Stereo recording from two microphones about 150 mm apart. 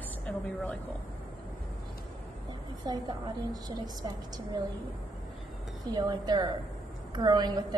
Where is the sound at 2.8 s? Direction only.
30° right (ahead or behind).